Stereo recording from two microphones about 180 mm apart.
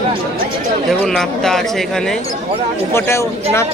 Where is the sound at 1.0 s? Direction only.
Centre (ahead or behind).